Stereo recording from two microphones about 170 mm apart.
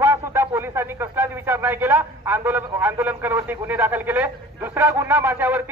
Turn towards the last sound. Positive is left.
turn(degrees=-10)  # may be behind; listen again after turning